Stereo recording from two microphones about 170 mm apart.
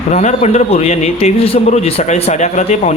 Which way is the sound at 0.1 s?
40° left (ahead or behind).